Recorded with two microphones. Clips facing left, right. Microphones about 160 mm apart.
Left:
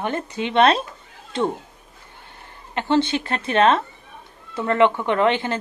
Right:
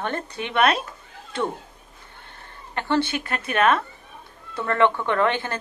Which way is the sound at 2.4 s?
20° left (ahead or behind).